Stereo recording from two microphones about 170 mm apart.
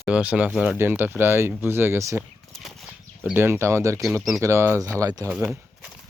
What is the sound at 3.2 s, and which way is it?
Speech, 10° right (ahead or behind).